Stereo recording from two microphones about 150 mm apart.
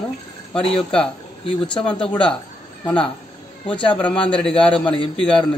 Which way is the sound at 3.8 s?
35° left (ahead or behind).